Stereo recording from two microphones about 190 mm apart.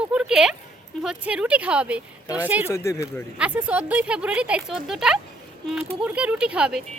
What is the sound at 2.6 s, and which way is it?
Speech, 15° left (ahead or behind).